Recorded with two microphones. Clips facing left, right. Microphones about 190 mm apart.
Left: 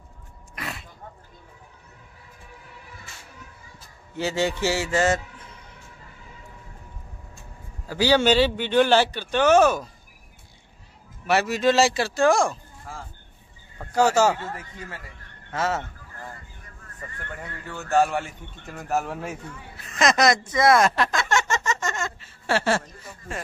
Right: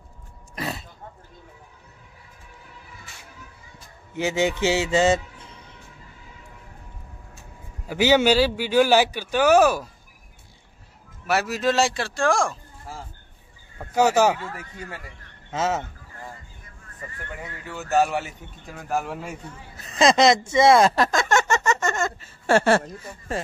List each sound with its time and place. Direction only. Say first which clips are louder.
0.6 s a sound: right 5 dB; 35° right (ahead or behind)
4.1 s a man's voice: right 2 dB; 15° right (ahead or behind)
7.8 s speech: right 2 dB; 20° right (ahead or behind)
8.3 s speech: even; 5° right (ahead or behind)
11.2 s a man's voice: left 2 dB; centre (ahead or behind)
13.7 s speech: right 1 dB; 15° right (ahead or behind)
15.5 s speech: right 1 dB; 20° right (ahead or behind)
17.3 s a man's voice: even; 10° right (ahead or behind)
19.9 s speech: right 3 dB; 30° right (ahead or behind); by 22.8 s 50° right (ahead or behind)
23.3 s speech: right 5 dB; 40° right (ahead or behind)